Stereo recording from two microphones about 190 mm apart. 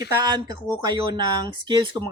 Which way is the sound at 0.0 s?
20° right (ahead or behind).